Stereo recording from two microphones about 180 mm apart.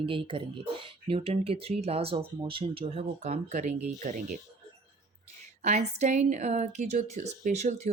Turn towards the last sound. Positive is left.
turn(degrees=-40)  # may be behind; listen again after turning